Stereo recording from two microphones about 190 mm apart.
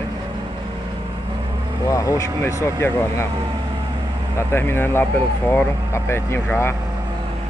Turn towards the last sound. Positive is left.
turn(degrees=15)  # may be behind; listen again after turning